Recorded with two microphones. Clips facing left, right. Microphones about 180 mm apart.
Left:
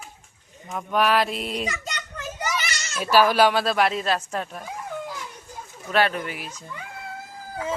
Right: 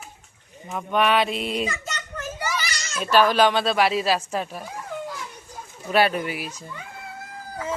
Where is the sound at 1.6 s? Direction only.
15° left (ahead or behind).